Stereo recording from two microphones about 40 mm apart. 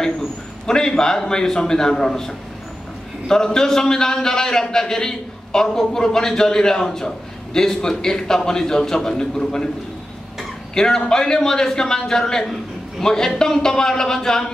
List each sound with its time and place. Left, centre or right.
0.0 s a man's voice: centre
10.7 s a man's voice: centre